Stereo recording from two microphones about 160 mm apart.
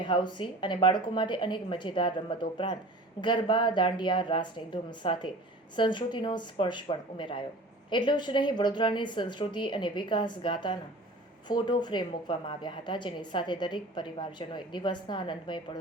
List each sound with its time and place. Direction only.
0.0 s a woman's voice: 30° left (ahead or behind)